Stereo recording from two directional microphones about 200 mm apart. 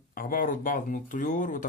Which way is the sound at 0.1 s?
45° left (ahead or behind).